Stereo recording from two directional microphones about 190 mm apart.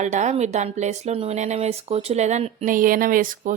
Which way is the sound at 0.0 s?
40° right (ahead or behind).